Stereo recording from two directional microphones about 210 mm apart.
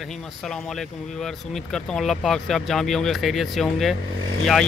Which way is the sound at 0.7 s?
Centre (ahead or behind).